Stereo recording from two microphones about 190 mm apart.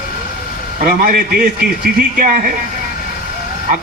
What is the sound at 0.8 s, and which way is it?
Speech, 50° right (ahead or behind).